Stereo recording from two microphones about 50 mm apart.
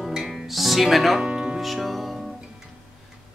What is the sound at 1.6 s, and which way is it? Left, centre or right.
Music, centre.